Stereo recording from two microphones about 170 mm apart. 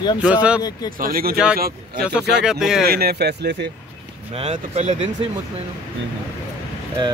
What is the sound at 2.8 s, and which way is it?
Speech, 65° right (ahead or behind).